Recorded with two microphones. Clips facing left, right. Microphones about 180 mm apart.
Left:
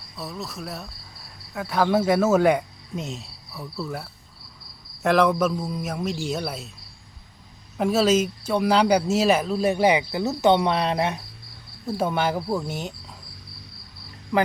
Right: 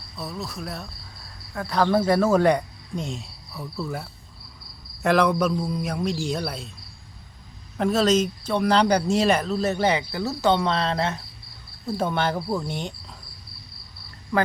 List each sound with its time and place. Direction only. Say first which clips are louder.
0.2 s speech: right 1 dB; centre (ahead or behind)
7.8 s speech: even; 5° left (ahead or behind)